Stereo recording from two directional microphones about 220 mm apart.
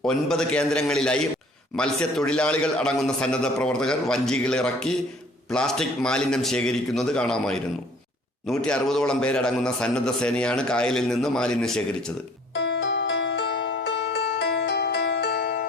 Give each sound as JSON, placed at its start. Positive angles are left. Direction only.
{"t": 0.0, "sound": "a man's voice", "side_deg": 5}
{"t": 12.5, "sound": "music", "side_deg": 55}